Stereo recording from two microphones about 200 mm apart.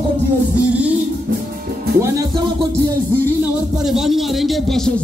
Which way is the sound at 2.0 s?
15° right (ahead or behind).